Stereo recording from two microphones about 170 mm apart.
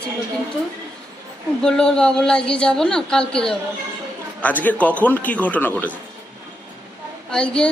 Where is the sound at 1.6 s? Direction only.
5° left (ahead or behind).